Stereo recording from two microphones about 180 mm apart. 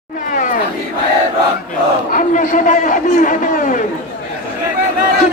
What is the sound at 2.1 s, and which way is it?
A man's voice, 45° left (ahead or behind).